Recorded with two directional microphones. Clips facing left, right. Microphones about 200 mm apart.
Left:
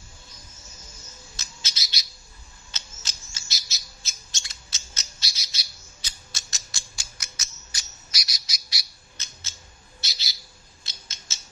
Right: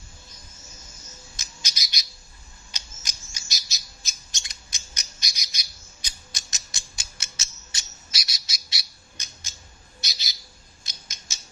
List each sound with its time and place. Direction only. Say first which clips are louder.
1.3 s bird: even; 15° right (ahead or behind)
2.7 s squawk: left 1 dB; 15° right (ahead or behind)
9.9 s bird: even; 15° right (ahead or behind)
10.8 s creak: even; 15° right (ahead or behind)